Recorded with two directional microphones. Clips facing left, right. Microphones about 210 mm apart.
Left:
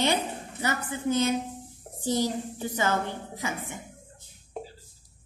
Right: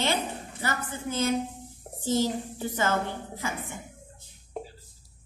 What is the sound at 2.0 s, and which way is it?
A woman's voice, 15° left (ahead or behind).